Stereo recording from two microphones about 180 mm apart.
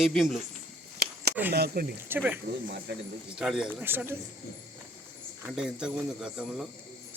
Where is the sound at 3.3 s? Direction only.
Centre (ahead or behind).